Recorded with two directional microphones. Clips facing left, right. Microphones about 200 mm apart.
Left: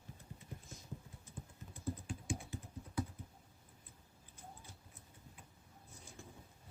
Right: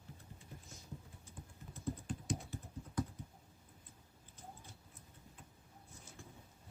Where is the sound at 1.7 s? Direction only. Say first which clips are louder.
Right 1 dB; 10° left (ahead or behind).